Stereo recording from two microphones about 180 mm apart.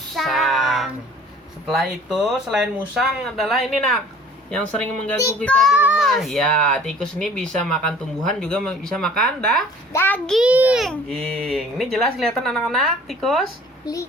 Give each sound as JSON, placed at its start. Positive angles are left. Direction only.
{"t": 0.1, "sound": "child singing", "side_deg": 0}
{"t": 1.6, "sound": "speech", "side_deg": 0}
{"t": 5.1, "sound": "speech", "side_deg": 15}
{"t": 5.4, "sound": "speech", "side_deg": 5}
{"t": 5.7, "sound": "speech", "side_deg": -5}
{"t": 13.8, "sound": "speech", "side_deg": 20}